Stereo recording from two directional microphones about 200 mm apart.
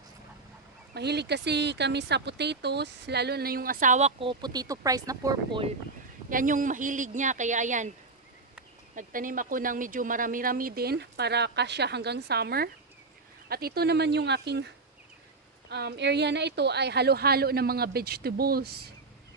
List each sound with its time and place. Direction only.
0.9 s speech: 55° right (ahead or behind); by 5.7 s 25° right (ahead or behind)
6.3 s speech: 40° right (ahead or behind)
9.0 s speech: 40° right (ahead or behind); by 14.7 s 55° right (ahead or behind)
15.7 s speech: 55° right (ahead or behind)